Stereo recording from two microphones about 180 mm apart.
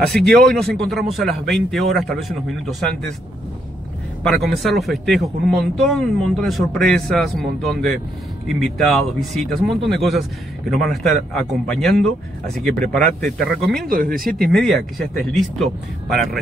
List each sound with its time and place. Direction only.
0.0 s a man's voice: 5° left (ahead or behind)
4.2 s a man's voice: centre (ahead or behind)
13.8 s speech: 55° right (ahead or behind)
14.6 s a man's voice: centre (ahead or behind)